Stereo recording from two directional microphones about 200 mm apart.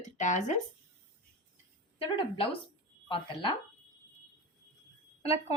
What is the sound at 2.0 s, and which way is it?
Speech, 25° left (ahead or behind).